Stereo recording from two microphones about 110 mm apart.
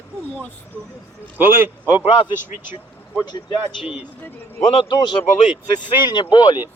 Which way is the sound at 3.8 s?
10° right (ahead or behind).